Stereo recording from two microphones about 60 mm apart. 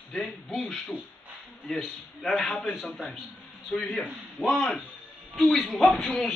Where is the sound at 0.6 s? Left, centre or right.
Centre.